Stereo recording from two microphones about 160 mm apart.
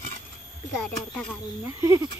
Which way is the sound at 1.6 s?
20° right (ahead or behind).